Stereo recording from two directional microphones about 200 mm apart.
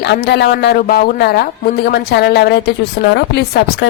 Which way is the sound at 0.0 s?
55° left (ahead or behind).